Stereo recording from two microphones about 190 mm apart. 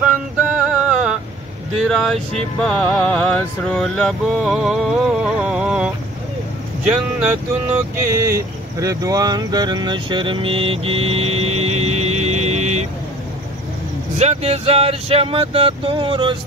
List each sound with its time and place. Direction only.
0.0 s music: 10° right (ahead or behind)
6.8 s speech: 5° right (ahead or behind); by 12.8 s 35° right (ahead or behind)
14.1 s speech: 35° right (ahead or behind)